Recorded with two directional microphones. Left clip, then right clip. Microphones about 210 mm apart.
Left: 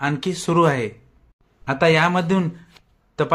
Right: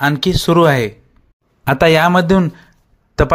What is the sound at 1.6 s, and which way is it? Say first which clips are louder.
Speech: right 6 dB; 40° right (ahead or behind).